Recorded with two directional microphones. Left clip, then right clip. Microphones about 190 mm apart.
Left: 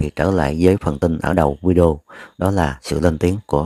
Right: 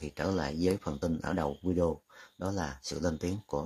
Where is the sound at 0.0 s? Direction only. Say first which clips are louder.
Left 15 dB; 35° left (ahead or behind).